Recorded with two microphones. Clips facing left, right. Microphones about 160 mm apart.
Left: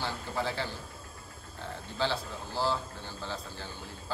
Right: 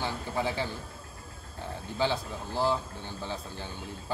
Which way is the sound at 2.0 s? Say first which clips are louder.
Right 3 dB; 15° right (ahead or behind).